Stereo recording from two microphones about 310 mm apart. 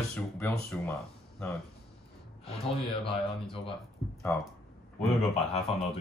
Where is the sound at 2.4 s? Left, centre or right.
Centre.